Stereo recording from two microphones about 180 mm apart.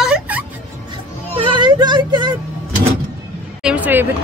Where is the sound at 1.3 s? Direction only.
25° right (ahead or behind).